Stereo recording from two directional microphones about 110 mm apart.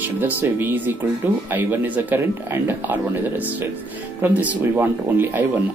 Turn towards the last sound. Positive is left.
turn(degrees=-20)  # may be behind; listen again after turning